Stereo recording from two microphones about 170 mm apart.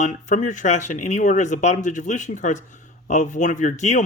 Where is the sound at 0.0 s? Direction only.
45° left (ahead or behind).